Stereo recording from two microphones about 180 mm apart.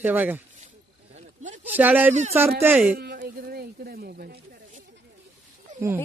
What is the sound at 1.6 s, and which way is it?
Speech, 10° right (ahead or behind).